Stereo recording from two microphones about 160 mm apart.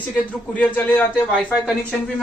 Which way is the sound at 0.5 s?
10° left (ahead or behind).